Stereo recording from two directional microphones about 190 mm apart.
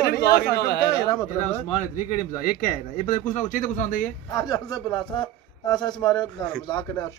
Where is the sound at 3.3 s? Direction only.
40° left (ahead or behind).